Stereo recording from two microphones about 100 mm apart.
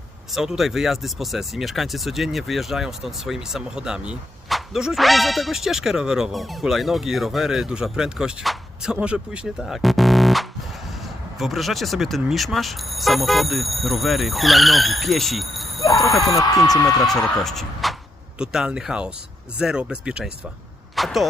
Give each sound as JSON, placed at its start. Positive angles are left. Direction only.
{"t": 0.3, "sound": "speech", "side_deg": -5}
{"t": 16.3, "sound": "speech", "side_deg": 40}
{"t": 17.1, "sound": "speech", "side_deg": 5}
{"t": 20.9, "sound": "a sound", "side_deg": 0}